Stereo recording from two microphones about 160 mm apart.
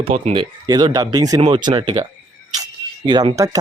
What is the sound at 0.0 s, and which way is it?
Speech, 40° right (ahead or behind).